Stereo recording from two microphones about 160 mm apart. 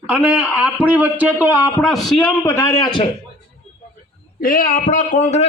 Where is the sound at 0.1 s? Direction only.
10° right (ahead or behind).